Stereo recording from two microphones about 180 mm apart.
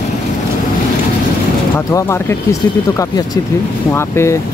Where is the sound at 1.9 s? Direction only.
15° left (ahead or behind).